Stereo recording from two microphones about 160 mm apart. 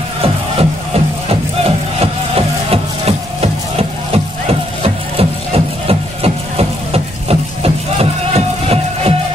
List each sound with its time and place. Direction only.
0.2 s music: 40° right (ahead or behind)